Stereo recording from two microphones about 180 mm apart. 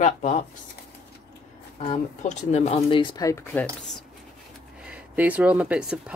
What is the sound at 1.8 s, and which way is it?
Speech, 40° left (ahead or behind).